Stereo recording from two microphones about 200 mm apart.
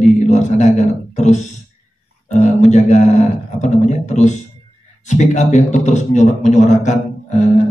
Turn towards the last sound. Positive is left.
turn(degrees=35)  # may be behind; listen again after turning